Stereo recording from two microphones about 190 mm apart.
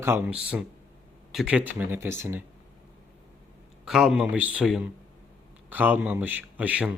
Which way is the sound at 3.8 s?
Centre (ahead or behind).